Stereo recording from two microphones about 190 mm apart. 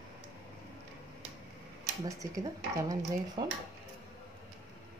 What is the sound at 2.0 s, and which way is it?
Speech, 15° right (ahead or behind).